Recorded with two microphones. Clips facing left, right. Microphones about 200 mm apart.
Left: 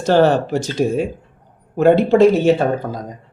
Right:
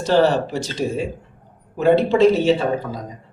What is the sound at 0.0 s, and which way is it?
A man's voice, 50° left (ahead or behind).